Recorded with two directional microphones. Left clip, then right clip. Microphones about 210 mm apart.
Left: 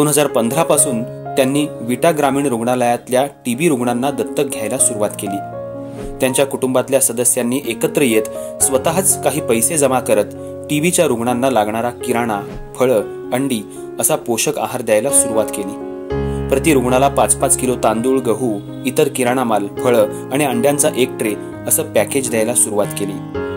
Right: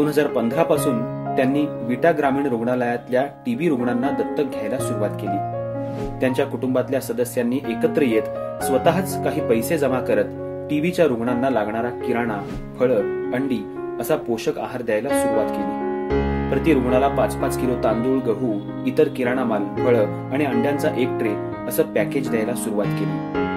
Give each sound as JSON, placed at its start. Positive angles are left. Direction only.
{"t": 0.0, "sound": "speech", "side_deg": 40}
{"t": 6.2, "sound": "speech", "side_deg": 40}
{"t": 16.4, "sound": "speech", "side_deg": 40}